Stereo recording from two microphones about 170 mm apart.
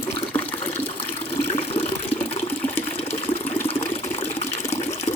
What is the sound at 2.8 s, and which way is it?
Water, 35° left (ahead or behind).